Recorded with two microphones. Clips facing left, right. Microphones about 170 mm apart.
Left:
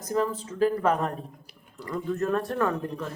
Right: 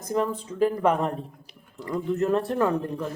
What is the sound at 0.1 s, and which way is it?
A man's voice, 15° right (ahead or behind).